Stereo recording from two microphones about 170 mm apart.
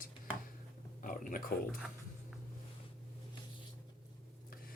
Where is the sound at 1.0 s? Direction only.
55° left (ahead or behind).